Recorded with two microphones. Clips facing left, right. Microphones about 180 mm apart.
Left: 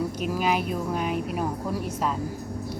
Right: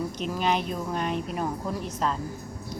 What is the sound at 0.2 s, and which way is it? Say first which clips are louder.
A woman's voice: even; 5° left (ahead or behind).